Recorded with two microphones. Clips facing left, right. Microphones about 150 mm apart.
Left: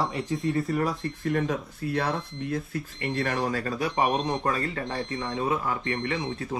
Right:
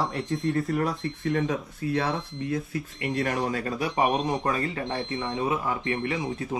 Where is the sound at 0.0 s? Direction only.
Centre (ahead or behind).